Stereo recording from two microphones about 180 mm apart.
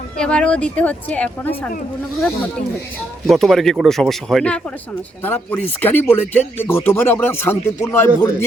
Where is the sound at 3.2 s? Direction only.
Centre (ahead or behind).